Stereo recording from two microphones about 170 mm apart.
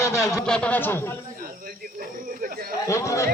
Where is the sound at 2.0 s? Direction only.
60° right (ahead or behind).